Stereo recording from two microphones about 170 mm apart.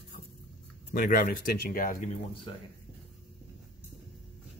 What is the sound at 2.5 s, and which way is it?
Speech, 30° left (ahead or behind).